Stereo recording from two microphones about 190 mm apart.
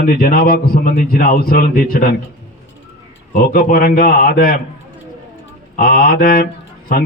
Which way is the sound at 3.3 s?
50° left (ahead or behind).